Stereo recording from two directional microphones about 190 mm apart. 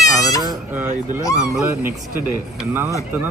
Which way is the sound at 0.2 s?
20° left (ahead or behind).